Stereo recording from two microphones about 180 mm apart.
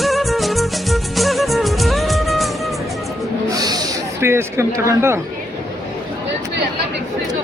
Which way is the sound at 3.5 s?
20° right (ahead or behind).